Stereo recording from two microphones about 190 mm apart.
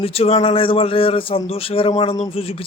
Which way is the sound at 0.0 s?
30° left (ahead or behind).